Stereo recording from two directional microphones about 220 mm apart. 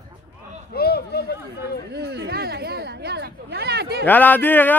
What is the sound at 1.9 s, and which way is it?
Speech, 50° right (ahead or behind).